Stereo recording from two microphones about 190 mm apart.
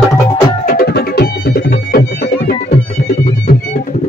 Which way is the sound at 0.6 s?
55° left (ahead or behind).